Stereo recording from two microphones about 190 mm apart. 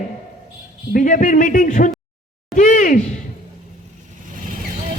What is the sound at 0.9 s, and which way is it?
Speech, 45° left (ahead or behind).